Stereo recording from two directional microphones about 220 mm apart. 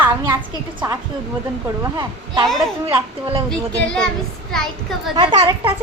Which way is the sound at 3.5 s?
5° left (ahead or behind).